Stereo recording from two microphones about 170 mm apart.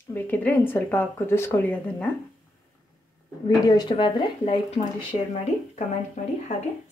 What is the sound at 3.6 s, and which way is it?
Speech, 25° left (ahead or behind).